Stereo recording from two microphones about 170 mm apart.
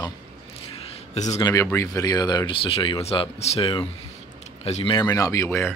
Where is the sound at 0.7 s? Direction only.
40° left (ahead or behind).